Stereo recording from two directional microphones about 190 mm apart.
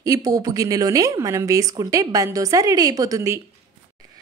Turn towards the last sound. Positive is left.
turn(degrees=-15)  # may be behind; listen again after turning